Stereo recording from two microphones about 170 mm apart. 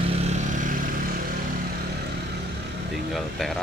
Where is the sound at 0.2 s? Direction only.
40° right (ahead or behind).